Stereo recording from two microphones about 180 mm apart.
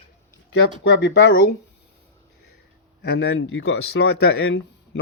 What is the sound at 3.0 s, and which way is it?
Speech, 65° left (ahead or behind).